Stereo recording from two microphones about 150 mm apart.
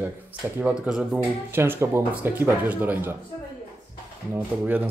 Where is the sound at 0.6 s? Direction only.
5° right (ahead or behind).